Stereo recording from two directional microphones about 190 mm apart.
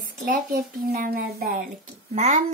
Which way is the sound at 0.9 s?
50° right (ahead or behind).